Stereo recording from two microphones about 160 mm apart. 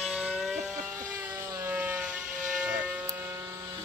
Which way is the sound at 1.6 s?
15° right (ahead or behind).